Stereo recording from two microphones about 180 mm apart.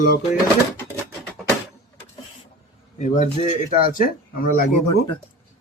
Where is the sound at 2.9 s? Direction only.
40° left (ahead or behind).